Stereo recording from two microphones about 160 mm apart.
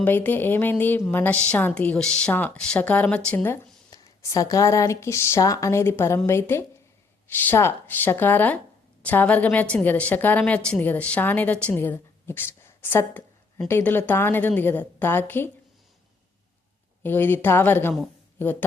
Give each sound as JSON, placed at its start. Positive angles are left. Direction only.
{"t": 0.0, "sound": "a woman's voice", "side_deg": 10}
{"t": 17.0, "sound": "a woman's voice", "side_deg": 15}